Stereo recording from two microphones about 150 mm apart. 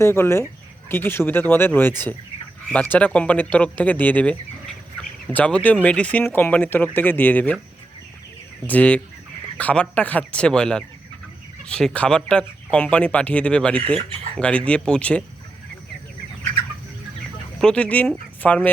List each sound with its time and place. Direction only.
0.0 s speech: 15° left (ahead or behind)
8.6 s speech: 10° left (ahead or behind)
17.6 s speech: 5° left (ahead or behind)